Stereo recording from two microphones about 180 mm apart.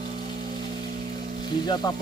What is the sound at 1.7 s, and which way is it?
Speech, 20° left (ahead or behind).